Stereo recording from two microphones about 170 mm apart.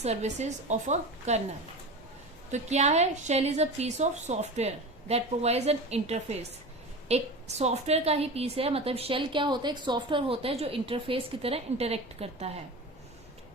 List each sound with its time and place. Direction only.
0.0 s a woman's voice: 40° right (ahead or behind)
2.5 s a woman's voice: 40° right (ahead or behind)